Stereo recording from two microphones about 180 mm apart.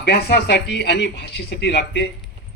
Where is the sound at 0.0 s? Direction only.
65° left (ahead or behind).